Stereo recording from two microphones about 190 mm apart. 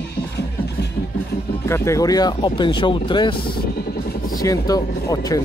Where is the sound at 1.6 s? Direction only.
15° left (ahead or behind).